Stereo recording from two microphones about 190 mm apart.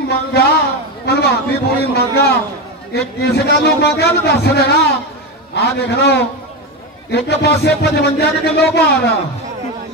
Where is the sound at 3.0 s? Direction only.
60° left (ahead or behind).